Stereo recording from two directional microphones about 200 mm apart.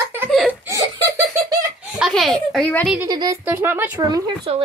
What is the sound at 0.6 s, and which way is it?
Laughter, 15° right (ahead or behind).